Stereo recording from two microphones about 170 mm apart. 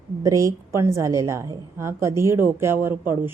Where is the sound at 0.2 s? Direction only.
20° right (ahead or behind).